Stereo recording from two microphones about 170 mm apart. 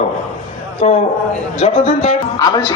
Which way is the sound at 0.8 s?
40° left (ahead or behind).